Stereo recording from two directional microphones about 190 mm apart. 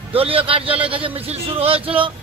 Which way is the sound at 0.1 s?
30° right (ahead or behind).